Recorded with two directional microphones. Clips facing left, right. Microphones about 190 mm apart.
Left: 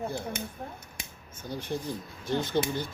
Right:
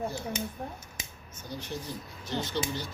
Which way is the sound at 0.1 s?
60° left (ahead or behind).